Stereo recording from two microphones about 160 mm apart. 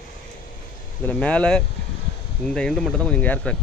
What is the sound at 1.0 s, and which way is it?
Speech, 10° left (ahead or behind).